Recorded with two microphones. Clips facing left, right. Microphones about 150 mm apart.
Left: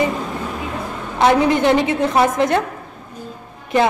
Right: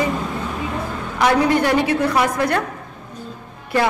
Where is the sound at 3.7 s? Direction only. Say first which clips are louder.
Left 3 dB; 20° left (ahead or behind).